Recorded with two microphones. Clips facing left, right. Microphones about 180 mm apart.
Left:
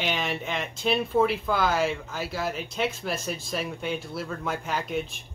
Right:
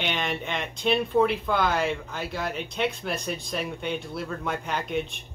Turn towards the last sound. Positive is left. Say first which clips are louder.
# right 1 dB
turn(degrees=0)  # may be behind; listen again after turning